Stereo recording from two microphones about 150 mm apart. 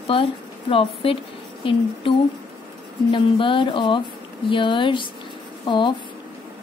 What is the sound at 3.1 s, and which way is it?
Speech, 35° left (ahead or behind).